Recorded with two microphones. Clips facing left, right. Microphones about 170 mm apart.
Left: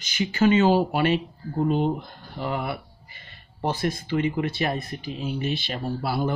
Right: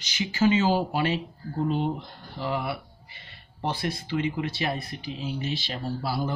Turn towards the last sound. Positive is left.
turn(degrees=60)  # may be behind; listen again after turning